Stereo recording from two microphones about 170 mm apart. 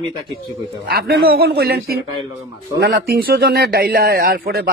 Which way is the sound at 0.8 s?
65° right (ahead or behind).